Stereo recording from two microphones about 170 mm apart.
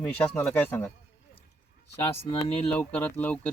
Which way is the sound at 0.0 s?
5° left (ahead or behind).